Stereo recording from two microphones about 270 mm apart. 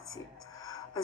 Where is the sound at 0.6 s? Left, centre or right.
Centre.